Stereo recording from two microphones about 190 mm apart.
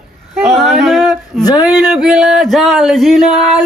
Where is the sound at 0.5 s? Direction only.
Centre (ahead or behind).